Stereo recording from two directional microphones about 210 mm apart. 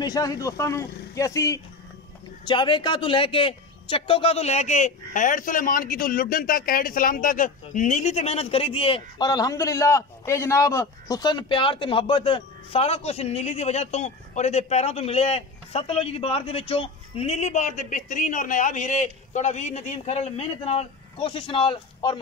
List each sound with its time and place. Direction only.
0.0 s a man's voice: 15° left (ahead or behind)